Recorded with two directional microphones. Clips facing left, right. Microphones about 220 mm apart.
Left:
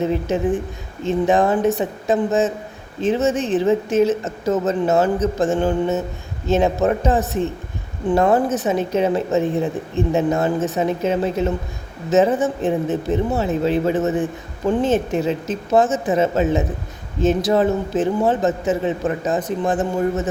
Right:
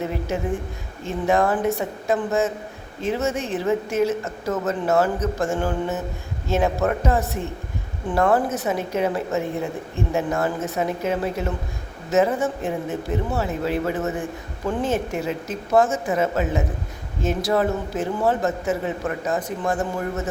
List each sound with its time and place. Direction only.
0.0 s speech: 20° left (ahead or behind)